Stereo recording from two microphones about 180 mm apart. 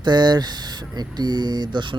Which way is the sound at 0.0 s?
25° right (ahead or behind).